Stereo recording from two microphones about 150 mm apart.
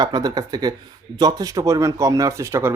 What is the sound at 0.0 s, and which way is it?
Speech, 25° right (ahead or behind).